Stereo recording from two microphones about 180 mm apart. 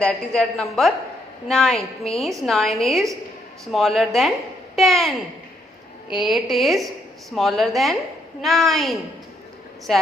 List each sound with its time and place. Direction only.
0.0 s a woman's voice: 5° left (ahead or behind)
6.1 s a woman's voice: centre (ahead or behind)